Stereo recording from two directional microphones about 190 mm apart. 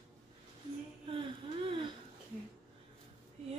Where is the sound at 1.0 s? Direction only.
25° right (ahead or behind).